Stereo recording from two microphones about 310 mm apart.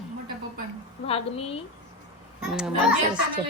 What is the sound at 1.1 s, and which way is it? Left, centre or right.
Speech, centre.